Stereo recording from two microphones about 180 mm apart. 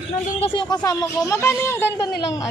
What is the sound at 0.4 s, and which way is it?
Speech, 30° left (ahead or behind).